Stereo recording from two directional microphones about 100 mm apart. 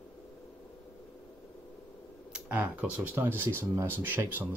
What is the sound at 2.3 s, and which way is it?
Speech, 15° right (ahead or behind).